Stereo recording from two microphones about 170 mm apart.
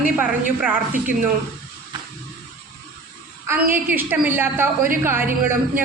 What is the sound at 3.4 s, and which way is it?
A man's voice, 10° right (ahead or behind).